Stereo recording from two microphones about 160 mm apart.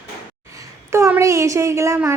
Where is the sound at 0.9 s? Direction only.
15° right (ahead or behind).